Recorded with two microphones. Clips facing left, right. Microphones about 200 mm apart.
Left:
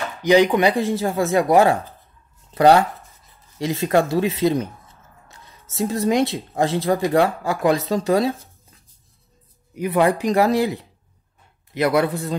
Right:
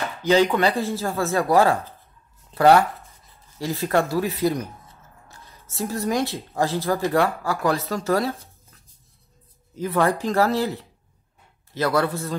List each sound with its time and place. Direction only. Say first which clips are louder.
0.2 s speech: left 3 dB; 15° left (ahead or behind)
9.8 s speech: left 3 dB; 15° left (ahead or behind)